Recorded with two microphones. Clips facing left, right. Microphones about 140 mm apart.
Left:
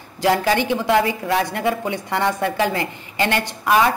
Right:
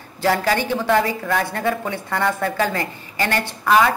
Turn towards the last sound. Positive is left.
turn(degrees=15)  # may be behind; listen again after turning